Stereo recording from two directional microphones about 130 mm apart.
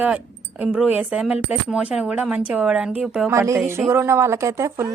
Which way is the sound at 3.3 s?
20° right (ahead or behind).